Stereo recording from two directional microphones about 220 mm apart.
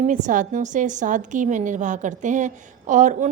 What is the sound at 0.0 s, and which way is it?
A woman's voice, 35° right (ahead or behind).